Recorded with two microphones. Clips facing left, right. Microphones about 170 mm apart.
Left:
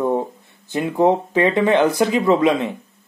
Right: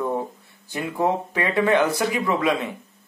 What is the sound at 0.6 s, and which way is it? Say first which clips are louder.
Speech: left 7 dB; 20° left (ahead or behind).